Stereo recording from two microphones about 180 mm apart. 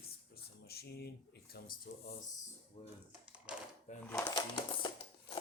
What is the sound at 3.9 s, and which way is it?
Speech, 40° left (ahead or behind).